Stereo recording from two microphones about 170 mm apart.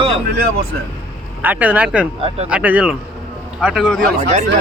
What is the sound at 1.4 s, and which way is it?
Speech, 10° right (ahead or behind).